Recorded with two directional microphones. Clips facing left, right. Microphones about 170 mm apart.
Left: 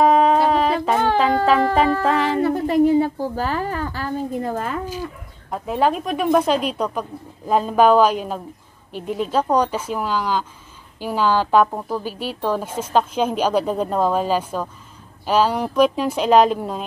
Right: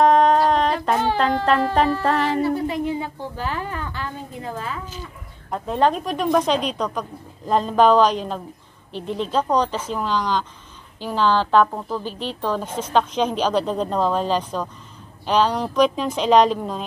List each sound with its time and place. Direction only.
0.0 s a sound: 5° left (ahead or behind)
2.0 s music: centre (ahead or behind)
2.4 s a woman's voice: 45° left (ahead or behind)
5.5 s a woman's voice: 5° left (ahead or behind)